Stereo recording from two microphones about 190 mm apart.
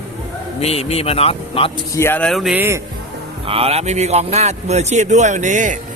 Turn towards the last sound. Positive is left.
turn(degrees=-40)  # may be behind; listen again after turning